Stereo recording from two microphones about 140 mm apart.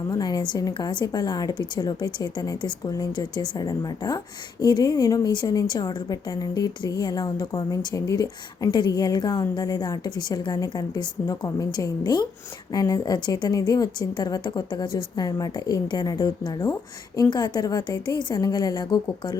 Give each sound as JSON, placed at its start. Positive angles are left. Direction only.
{"t": 0.1, "sound": "a woman's voice", "side_deg": 30}